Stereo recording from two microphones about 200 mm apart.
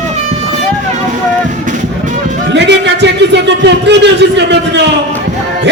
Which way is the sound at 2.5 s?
60° right (ahead or behind).